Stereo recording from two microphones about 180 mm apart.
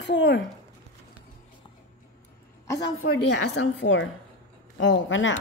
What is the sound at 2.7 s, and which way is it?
Speech, 65° left (ahead or behind).